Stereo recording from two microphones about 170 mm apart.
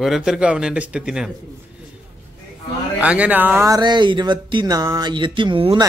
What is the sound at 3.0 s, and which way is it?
Speech, 10° right (ahead or behind).